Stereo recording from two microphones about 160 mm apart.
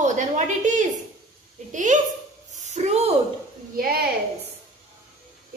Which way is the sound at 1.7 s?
50° right (ahead or behind).